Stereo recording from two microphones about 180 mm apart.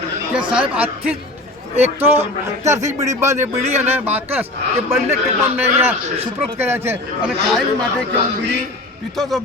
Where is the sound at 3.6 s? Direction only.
35° right (ahead or behind).